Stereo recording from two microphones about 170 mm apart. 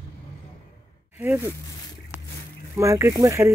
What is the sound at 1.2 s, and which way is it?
Speech, 10° right (ahead or behind).